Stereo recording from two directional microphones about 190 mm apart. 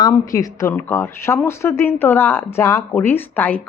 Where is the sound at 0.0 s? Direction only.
15° left (ahead or behind).